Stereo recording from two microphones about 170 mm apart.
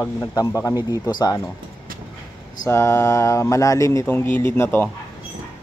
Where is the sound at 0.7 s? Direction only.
20° right (ahead or behind).